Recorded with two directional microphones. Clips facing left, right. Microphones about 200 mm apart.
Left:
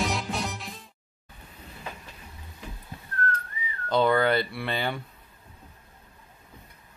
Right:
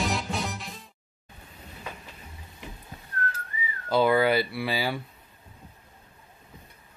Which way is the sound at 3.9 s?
5° right (ahead or behind).